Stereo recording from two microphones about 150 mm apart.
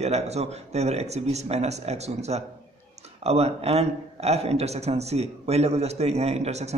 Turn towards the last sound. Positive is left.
turn(degrees=-45)  # may be behind; listen again after turning